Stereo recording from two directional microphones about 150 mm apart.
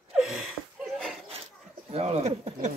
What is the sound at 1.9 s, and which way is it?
Speech, 45° right (ahead or behind).